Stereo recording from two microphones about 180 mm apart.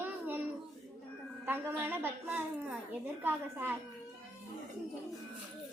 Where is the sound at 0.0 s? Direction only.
10° right (ahead or behind).